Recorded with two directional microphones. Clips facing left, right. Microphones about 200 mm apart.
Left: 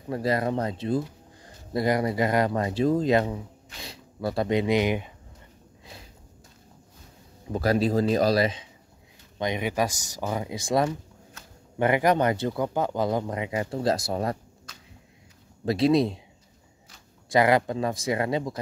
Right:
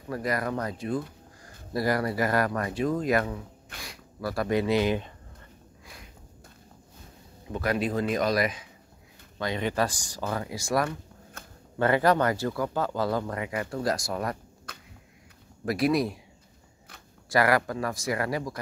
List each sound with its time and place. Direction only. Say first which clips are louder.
0.1 s speech: left 4 dB; 25° left (ahead or behind)
7.5 s speech: left 4 dB; 35° left (ahead or behind)
9.4 s speech: left 1 dB; 15° left (ahead or behind)
11.4 s a sound: right 4 dB; 50° right (ahead or behind)
11.8 s speech: left 1 dB; 15° left (ahead or behind)
14.7 s a sound: right 5 dB; 55° right (ahead or behind)
15.6 s speech: left 4 dB; 25° left (ahead or behind)
17.3 s speech: left 3 dB; 20° left (ahead or behind)